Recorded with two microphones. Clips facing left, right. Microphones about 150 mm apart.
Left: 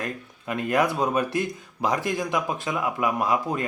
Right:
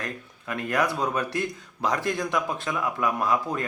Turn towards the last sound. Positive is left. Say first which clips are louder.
# left 1 dB
turn(degrees=15)  # may be behind; listen again after turning